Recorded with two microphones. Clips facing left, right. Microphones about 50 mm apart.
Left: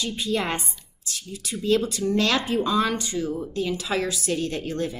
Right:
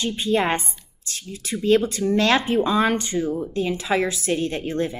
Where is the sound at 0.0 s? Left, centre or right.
Right.